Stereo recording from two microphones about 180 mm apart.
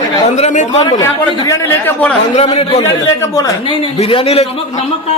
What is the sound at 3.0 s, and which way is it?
Speech, 20° left (ahead or behind).